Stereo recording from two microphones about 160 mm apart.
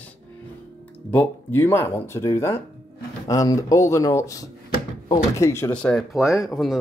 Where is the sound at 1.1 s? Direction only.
15° left (ahead or behind).